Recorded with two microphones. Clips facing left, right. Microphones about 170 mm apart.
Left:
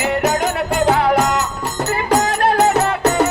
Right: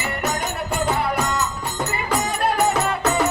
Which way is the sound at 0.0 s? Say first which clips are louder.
Left 8 dB; 90° left.